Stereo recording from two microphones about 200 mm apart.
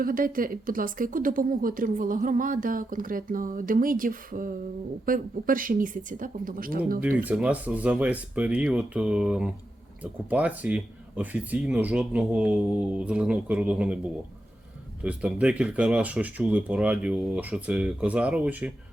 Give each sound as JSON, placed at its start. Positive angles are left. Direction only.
{"t": 0.0, "sound": "speech", "side_deg": -45}
{"t": 7.2, "sound": "speech", "side_deg": -5}
{"t": 15.0, "sound": "speech", "side_deg": -5}